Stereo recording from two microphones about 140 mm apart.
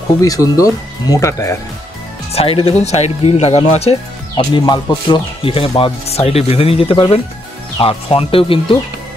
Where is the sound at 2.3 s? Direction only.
40° left (ahead or behind).